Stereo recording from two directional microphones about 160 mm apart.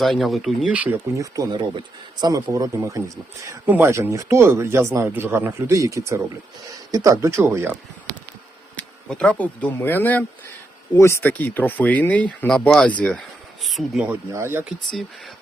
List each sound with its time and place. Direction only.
0.0 s speech: centre (ahead or behind)
8.7 s speech: 5° left (ahead or behind)
13.0 s a sound: 5° left (ahead or behind)
14.1 s speech: 15° right (ahead or behind)